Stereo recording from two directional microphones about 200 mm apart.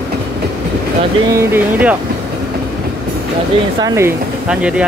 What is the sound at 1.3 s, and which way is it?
Speech, 10° right (ahead or behind).